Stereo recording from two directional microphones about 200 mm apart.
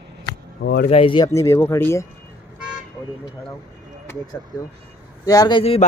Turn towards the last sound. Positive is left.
turn(degrees=25)  # may be behind; listen again after turning